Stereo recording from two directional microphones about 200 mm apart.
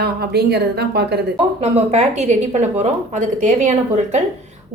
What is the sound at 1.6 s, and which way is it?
A woman's voice, 35° right (ahead or behind).